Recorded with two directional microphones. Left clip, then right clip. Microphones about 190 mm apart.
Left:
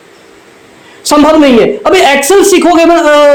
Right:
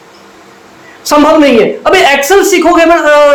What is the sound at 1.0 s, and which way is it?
A man's voice, 50° left (ahead or behind).